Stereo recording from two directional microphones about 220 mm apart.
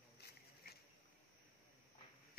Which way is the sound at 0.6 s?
45° left (ahead or behind).